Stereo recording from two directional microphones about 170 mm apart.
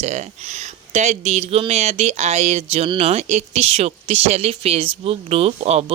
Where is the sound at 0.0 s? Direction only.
40° right (ahead or behind).